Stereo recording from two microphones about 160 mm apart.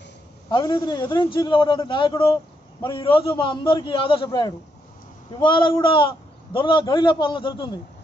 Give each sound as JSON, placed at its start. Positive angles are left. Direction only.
{"t": 0.5, "sound": "a man's voice", "side_deg": 30}